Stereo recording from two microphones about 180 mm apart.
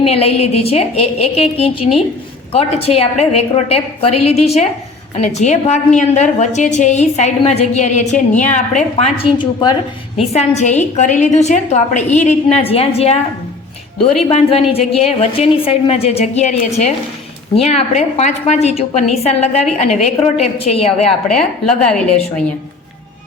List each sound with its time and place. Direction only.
0.0 s a woman's voice: 35° left (ahead or behind)
9.1 s a woman's voice: 30° left (ahead or behind)
10.3 s a woman's voice: 40° left (ahead or behind)
14.3 s a woman's voice: 35° left (ahead or behind)